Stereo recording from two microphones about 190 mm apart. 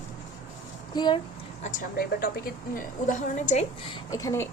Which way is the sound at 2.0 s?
55° left (ahead or behind).